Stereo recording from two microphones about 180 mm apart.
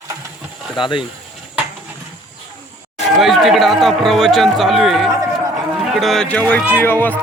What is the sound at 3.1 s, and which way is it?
A man's voice, centre (ahead or behind).